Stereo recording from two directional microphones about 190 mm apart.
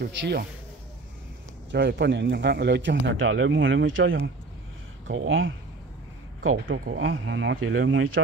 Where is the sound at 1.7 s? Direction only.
60° right (ahead or behind).